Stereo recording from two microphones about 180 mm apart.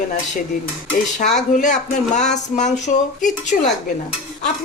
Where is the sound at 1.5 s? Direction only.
45° left (ahead or behind).